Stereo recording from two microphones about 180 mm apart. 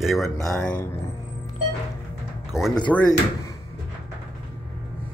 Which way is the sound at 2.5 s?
5° right (ahead or behind).